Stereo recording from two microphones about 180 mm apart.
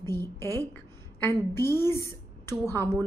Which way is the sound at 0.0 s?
15° left (ahead or behind).